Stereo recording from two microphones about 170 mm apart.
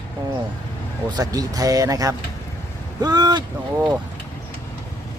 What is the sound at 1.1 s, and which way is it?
Speech, 20° right (ahead or behind).